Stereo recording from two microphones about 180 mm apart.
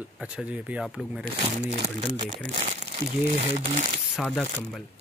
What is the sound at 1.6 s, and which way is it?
Speech, 40° right (ahead or behind).